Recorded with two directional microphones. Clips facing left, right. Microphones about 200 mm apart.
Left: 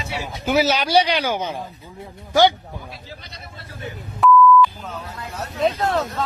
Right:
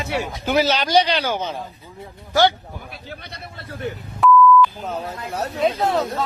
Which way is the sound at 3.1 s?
60° right (ahead or behind).